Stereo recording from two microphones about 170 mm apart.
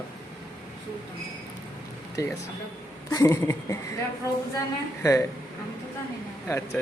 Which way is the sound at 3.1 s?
15° left (ahead or behind).